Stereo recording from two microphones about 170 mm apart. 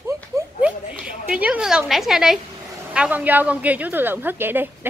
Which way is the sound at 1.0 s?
10° right (ahead or behind).